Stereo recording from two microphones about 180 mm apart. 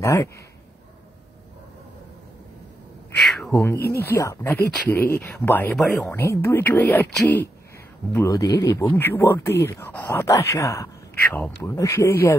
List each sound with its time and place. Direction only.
0.0 s speech: 20° left (ahead or behind)
3.3 s speech: 5° left (ahead or behind)